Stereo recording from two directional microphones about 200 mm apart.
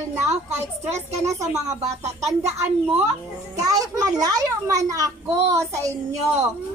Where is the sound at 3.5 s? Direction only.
20° right (ahead or behind).